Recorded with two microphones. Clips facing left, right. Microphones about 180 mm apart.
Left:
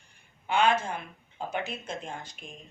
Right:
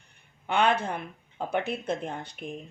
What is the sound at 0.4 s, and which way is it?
Speech, 60° right (ahead or behind).